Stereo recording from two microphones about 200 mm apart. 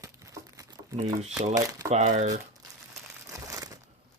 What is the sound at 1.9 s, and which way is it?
Speech, 35° right (ahead or behind).